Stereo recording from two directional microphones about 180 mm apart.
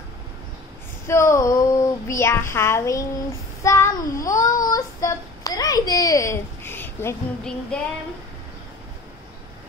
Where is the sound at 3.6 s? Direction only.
15° left (ahead or behind).